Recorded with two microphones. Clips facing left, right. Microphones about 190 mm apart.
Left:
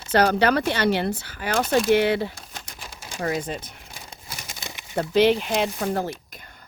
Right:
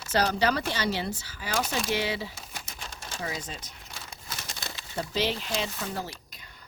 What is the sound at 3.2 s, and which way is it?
Speech, 60° left (ahead or behind).